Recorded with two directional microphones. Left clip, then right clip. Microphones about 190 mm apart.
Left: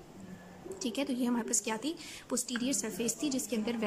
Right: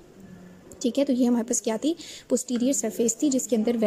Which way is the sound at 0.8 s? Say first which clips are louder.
Right 11 dB; 25° right (ahead or behind).